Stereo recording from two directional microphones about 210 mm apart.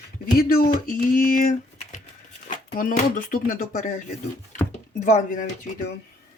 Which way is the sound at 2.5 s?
40° left (ahead or behind).